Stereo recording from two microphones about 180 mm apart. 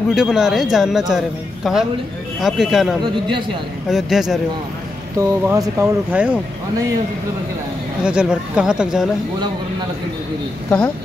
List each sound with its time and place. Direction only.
0.1 s speech: centre (ahead or behind)
3.0 s speech: 25° right (ahead or behind)
3.9 s speech: centre (ahead or behind)
5.1 s speech: 15° right (ahead or behind)
8.0 s speech: 5° right (ahead or behind)